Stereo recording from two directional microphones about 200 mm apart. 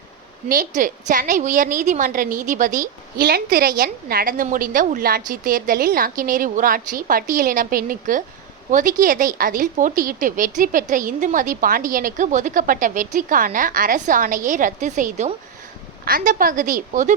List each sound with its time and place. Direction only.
0.4 s a woman's voice: 45° right (ahead or behind)